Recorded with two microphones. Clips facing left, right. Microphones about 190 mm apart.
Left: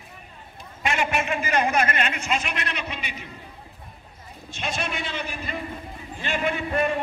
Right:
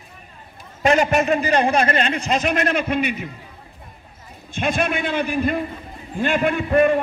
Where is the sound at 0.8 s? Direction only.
40° right (ahead or behind); by 3.3 s 55° right (ahead or behind).